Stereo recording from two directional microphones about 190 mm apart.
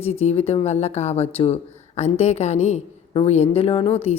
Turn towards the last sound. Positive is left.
turn(degrees=30)  # may be behind; listen again after turning